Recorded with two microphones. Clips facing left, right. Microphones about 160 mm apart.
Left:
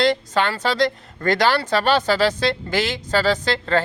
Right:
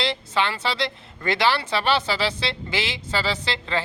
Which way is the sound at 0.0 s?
45° left (ahead or behind).